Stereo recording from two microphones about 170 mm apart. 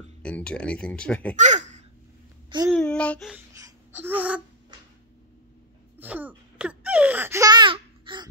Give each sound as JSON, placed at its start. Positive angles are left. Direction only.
{"t": 0.2, "sound": "speech", "side_deg": 5}
{"t": 1.3, "sound": "speech", "side_deg": -45}
{"t": 2.7, "sound": "speech", "side_deg": 5}
{"t": 3.5, "sound": "babbling", "side_deg": -15}
{"t": 5.9, "sound": "a sound", "side_deg": -10}